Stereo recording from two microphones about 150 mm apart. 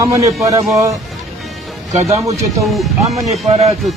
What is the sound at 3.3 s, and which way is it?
Speech, 50° right (ahead or behind).